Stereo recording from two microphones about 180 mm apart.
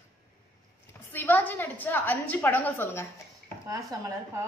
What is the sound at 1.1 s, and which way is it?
A woman's voice, 10° left (ahead or behind).